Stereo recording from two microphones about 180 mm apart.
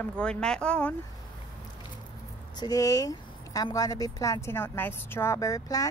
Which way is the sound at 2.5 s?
20° left (ahead or behind).